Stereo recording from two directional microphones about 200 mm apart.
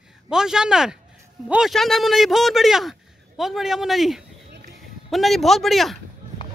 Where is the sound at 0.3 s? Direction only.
5° right (ahead or behind).